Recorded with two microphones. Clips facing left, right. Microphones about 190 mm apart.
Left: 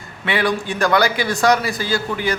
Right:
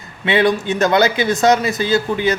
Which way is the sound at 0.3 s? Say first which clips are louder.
Right 5 dB; 20° right (ahead or behind).